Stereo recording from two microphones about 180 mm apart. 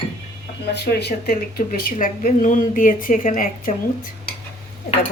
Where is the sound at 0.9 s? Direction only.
60° left (ahead or behind).